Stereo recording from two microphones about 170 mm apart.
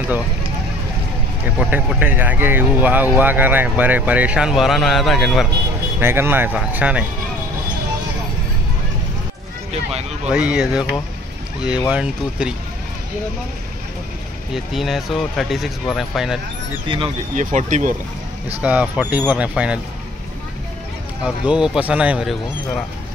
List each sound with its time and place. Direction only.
1.4 s speech: 10° right (ahead or behind)
5.9 s speech: 15° right (ahead or behind)
10.2 s speech: 5° right (ahead or behind)
11.9 s speech: 5° right (ahead or behind)
14.5 s speech: centre (ahead or behind)
16.8 s speech: 30° right (ahead or behind)
17.4 s speech: 45° right (ahead or behind)
18.6 s speech: 10° right (ahead or behind)
21.2 s speech: 5° right (ahead or behind)